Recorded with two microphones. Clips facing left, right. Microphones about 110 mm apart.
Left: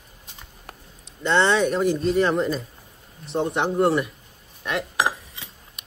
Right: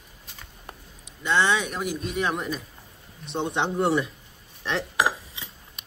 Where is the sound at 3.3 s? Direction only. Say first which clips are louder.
Left 3 dB; 25° right (ahead or behind).